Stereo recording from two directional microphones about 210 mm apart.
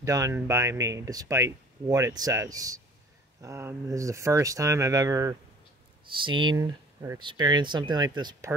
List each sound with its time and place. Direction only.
0.0 s speech: 15° right (ahead or behind)